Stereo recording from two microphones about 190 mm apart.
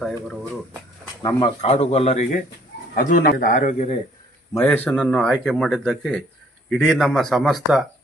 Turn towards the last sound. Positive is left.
turn(degrees=0)  # may be behind; listen again after turning